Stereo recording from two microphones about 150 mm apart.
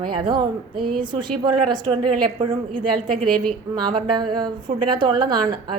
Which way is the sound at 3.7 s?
30° right (ahead or behind).